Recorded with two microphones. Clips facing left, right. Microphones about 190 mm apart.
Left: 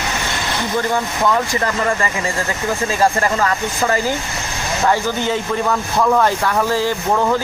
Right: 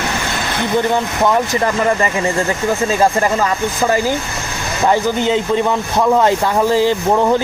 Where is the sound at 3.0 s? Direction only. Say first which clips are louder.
Even; 20° right (ahead or behind).